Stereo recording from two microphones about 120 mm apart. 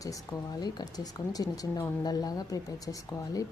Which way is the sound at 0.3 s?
30° left (ahead or behind).